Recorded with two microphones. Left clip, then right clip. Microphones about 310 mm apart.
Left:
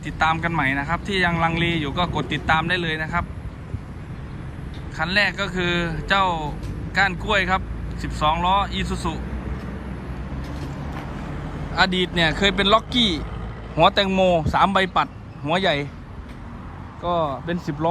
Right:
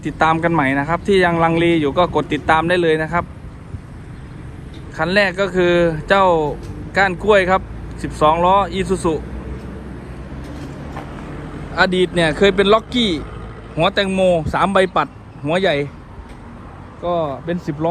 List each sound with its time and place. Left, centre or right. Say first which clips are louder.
0.0 s speech: right 5 dB; centre
4.9 s speech: right 5 dB; centre
11.7 s a man's voice: right 5 dB; centre
17.0 s a man's voice: right 3 dB; centre